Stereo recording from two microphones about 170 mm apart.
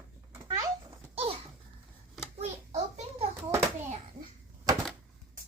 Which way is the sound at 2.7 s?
45° right (ahead or behind).